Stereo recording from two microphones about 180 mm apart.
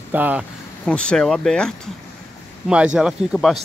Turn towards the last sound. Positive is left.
turn(degrees=0)  # may be behind; listen again after turning